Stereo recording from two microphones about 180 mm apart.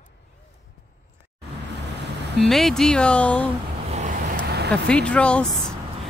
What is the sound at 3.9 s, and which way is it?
Vehicle, 50° right (ahead or behind).